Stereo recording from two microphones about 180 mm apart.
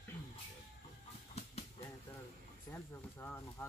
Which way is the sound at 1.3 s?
35° left (ahead or behind).